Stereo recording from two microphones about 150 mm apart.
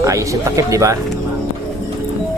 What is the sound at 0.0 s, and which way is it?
Speech, 20° right (ahead or behind).